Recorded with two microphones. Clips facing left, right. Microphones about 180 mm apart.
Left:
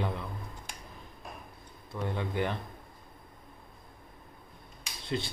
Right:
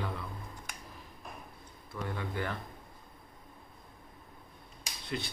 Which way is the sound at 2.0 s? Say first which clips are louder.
Left 5 dB; 20° left (ahead or behind).